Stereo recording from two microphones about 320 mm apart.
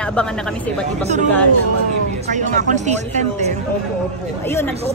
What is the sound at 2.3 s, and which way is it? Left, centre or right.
Speech, right.